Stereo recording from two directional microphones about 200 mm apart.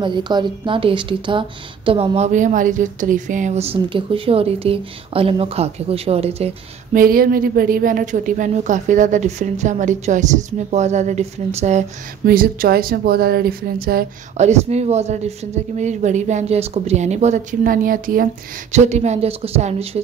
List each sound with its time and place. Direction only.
0.0 s a woman's voice: 20° right (ahead or behind)
6.9 s speech: 45° right (ahead or behind)
12.3 s speech: 45° right (ahead or behind)
14.3 s speech: 35° right (ahead or behind)